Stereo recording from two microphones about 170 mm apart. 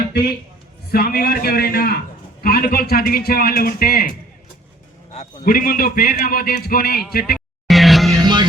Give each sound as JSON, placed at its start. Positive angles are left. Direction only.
{"t": 0.9, "sound": "a man's voice", "side_deg": 60}
{"t": 5.1, "sound": "a man's voice", "side_deg": 40}
{"t": 5.5, "sound": "a man's voice", "side_deg": 55}
{"t": 7.3, "sound": "grunt", "side_deg": 0}
{"t": 8.2, "sound": "music", "side_deg": -25}